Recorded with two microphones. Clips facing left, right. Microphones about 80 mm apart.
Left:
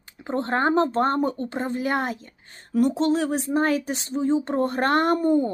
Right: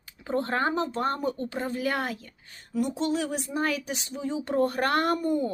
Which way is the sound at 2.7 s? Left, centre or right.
Left.